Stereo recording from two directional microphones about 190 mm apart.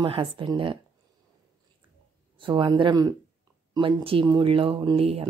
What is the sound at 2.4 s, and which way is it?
A woman's voice, 25° right (ahead or behind).